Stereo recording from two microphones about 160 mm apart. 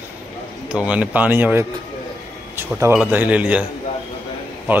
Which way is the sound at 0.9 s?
10° right (ahead or behind).